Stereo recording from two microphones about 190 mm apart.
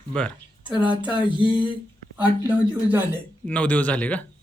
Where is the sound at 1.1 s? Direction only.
25° left (ahead or behind).